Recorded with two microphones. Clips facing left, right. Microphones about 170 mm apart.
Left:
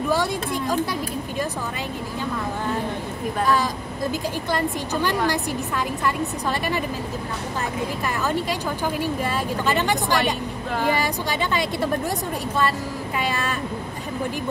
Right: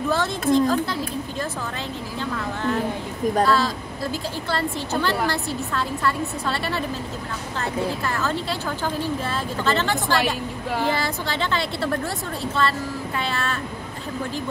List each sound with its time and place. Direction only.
0.1 s a woman's voice: 10° left (ahead or behind)
3.4 s a woman's voice: 15° left (ahead or behind)
8.0 s a woman's voice: 15° left (ahead or behind)
13.2 s a woman's voice: 15° left (ahead or behind)